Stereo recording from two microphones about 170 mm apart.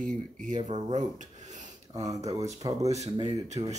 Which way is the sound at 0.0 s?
50° right (ahead or behind).